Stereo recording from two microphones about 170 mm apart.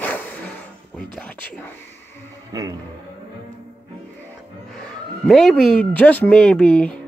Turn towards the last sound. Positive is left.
turn(degrees=5)  # may be behind; listen again after turning